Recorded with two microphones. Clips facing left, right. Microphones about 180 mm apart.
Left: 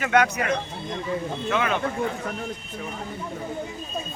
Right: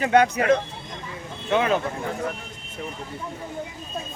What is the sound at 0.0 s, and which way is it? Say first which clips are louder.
Speech: right 3 dB; 30° right (ahead or behind).